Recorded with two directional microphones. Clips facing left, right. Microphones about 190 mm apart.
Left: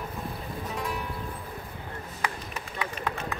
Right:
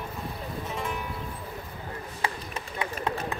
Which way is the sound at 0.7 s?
Centre (ahead or behind).